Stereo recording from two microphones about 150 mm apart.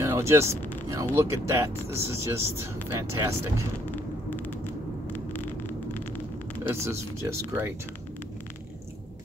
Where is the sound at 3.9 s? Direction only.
10° left (ahead or behind).